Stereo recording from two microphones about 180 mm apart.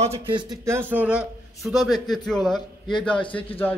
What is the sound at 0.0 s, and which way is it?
Speech, 30° right (ahead or behind).